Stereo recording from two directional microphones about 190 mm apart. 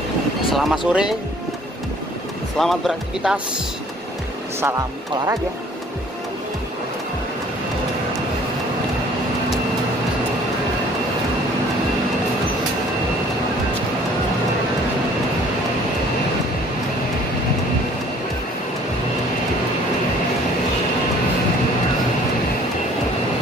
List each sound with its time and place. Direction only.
0.5 s speech: centre (ahead or behind)
2.6 s speech: centre (ahead or behind)
4.6 s speech: 15° right (ahead or behind)